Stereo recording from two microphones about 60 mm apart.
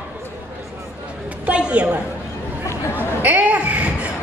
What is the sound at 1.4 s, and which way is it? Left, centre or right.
Speech, centre.